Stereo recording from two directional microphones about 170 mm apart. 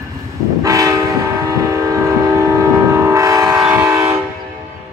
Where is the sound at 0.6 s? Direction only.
20° right (ahead or behind).